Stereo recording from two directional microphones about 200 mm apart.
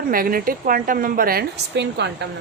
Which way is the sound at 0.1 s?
45° right (ahead or behind).